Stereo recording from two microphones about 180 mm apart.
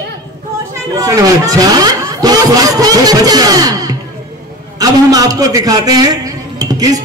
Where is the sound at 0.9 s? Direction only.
20° right (ahead or behind).